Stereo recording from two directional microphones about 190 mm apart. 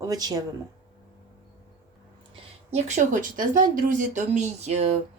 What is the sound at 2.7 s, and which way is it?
Speech, 40° right (ahead or behind).